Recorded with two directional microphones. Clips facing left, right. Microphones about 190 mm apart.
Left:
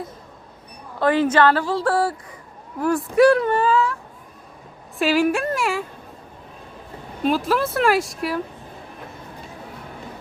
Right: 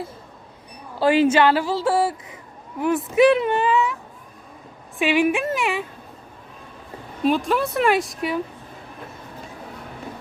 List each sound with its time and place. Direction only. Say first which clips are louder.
0.9 s a woman's voice: right 1 dB; 25° right (ahead or behind)
2.7 s speech: even; centre (ahead or behind)
3.2 s a woman's voice: left 1 dB; 20° right (ahead or behind)
4.9 s speech: even; centre (ahead or behind)
7.2 s speech: even; centre (ahead or behind)